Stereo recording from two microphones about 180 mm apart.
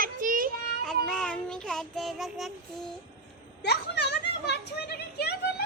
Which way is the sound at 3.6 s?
65° left (ahead or behind).